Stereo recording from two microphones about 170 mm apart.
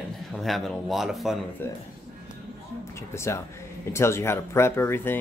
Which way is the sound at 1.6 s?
10° left (ahead or behind).